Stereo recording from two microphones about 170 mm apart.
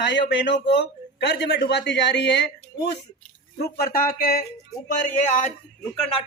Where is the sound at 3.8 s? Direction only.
60° left (ahead or behind).